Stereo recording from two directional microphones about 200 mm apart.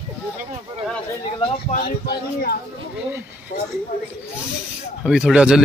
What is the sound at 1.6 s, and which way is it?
Speech, 45° left (ahead or behind).